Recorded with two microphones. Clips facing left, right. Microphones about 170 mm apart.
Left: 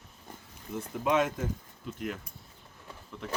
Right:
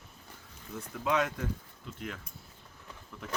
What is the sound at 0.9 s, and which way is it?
Speech, 5° left (ahead or behind).